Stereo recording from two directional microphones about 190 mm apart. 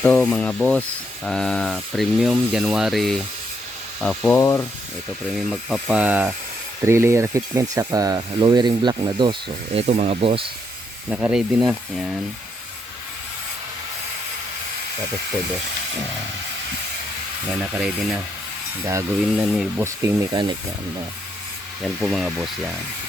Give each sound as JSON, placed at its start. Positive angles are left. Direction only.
{"t": 0.0, "sound": "speech", "side_deg": 5}
{"t": 5.5, "sound": "speech", "side_deg": -5}
{"t": 9.7, "sound": "speech", "side_deg": -35}
{"t": 11.1, "sound": "speech", "side_deg": -5}
{"t": 17.6, "sound": "speech", "side_deg": -5}
{"t": 19.4, "sound": "speech", "side_deg": -5}
{"t": 20.0, "sound": "speech", "side_deg": -15}
{"t": 22.0, "sound": "speech", "side_deg": 0}